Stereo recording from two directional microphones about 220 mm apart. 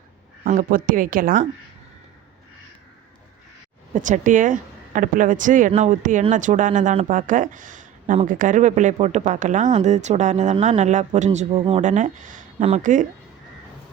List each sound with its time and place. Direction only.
0.4 s speech: 40° right (ahead or behind)
3.9 s speech: 35° right (ahead or behind)